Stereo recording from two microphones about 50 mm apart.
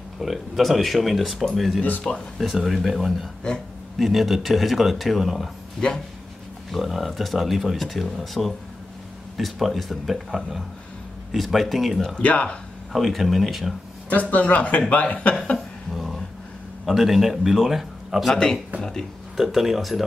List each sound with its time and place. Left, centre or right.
0.2 s speech: centre
1.8 s speech: left
2.3 s speech: centre
5.8 s speech: centre
6.7 s speech: centre
12.2 s speech: left
12.9 s speech: centre
14.3 s speech: left
15.9 s a sound: centre
16.8 s speech: centre
18.3 s speech: centre
19.3 s speech: centre